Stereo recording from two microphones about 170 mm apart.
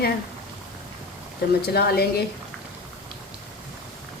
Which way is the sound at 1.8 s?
65° left (ahead or behind).